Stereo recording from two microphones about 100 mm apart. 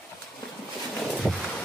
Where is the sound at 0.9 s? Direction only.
5° left (ahead or behind).